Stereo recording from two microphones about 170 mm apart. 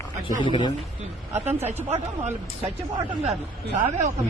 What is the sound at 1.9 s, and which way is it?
Speech, 40° right (ahead or behind).